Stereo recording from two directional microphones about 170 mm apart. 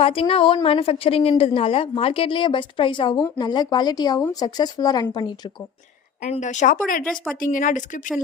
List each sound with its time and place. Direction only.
0.0 s a woman's voice: 35° left (ahead or behind)
6.2 s speech: 40° left (ahead or behind)
7.0 s speech: 5° left (ahead or behind)
7.3 s speech: 50° left (ahead or behind)